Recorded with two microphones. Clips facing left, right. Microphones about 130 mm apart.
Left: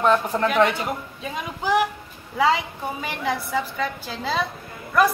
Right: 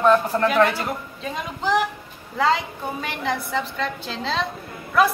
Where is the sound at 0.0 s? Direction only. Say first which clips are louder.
Right 2 dB; 20° left (ahead or behind).